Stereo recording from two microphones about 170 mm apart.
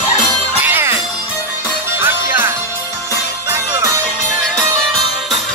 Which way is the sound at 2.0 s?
15° right (ahead or behind).